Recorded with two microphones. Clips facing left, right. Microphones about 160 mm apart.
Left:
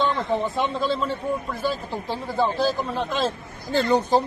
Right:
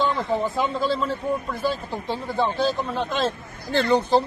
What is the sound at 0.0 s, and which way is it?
Speech, centre (ahead or behind).